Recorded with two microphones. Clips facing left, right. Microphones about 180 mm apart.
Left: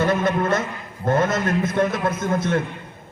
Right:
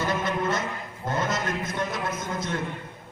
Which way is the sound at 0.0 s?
55° left (ahead or behind).